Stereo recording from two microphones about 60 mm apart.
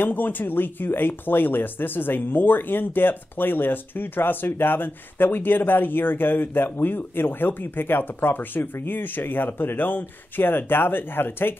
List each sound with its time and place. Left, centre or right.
0.0 s speech: left